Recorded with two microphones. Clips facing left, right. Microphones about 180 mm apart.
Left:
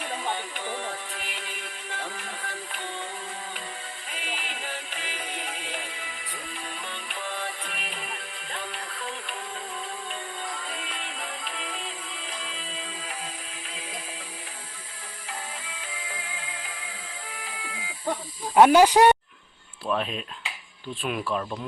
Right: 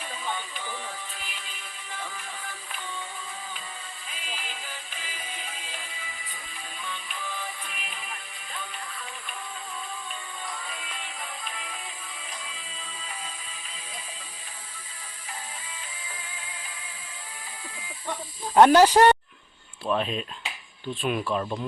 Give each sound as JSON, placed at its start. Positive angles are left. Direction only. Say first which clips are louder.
{"t": 0.0, "sound": "music", "louder": "left 3 dB", "side_deg": 70}
{"t": 4.1, "sound": "music", "louder": "left 3 dB", "side_deg": 70}
{"t": 10.8, "sound": "music", "louder": "left 2 dB", "side_deg": 75}
{"t": 16.0, "sound": "music", "louder": "left 4 dB", "side_deg": 70}
{"t": 18.5, "sound": "speech", "louder": "even", "side_deg": 5}